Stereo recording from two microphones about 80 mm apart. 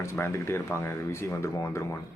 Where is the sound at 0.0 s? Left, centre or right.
Left.